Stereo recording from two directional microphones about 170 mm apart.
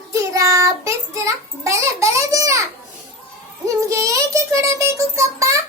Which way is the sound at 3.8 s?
20° right (ahead or behind).